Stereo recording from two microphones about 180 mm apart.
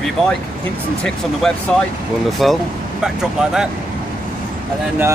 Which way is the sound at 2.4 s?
Centre (ahead or behind).